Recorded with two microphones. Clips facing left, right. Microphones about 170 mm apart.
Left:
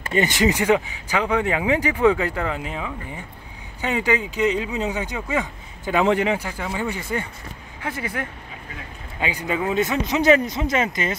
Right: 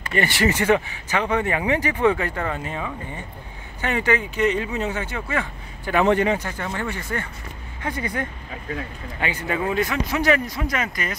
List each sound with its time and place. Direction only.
0.0 s speech: 20° left (ahead or behind)